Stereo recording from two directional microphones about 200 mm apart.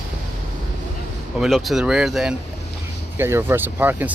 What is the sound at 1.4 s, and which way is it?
Speech, centre (ahead or behind).